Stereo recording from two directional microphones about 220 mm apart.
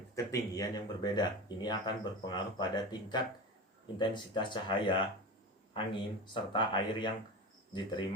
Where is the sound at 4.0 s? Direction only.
20° left (ahead or behind).